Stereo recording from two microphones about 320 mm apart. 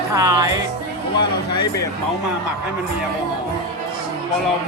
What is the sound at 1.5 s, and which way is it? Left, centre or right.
Speech, centre.